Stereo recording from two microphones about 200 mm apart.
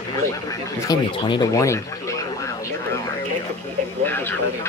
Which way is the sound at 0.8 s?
20° left (ahead or behind).